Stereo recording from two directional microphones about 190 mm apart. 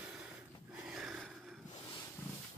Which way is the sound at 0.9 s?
5° right (ahead or behind).